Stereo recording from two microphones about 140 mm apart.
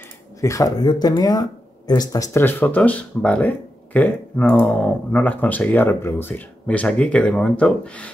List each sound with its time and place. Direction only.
0.4 s speech: 25° left (ahead or behind); by 8.1 s 10° left (ahead or behind)